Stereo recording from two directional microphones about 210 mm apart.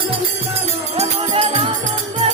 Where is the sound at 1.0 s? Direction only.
30° right (ahead or behind).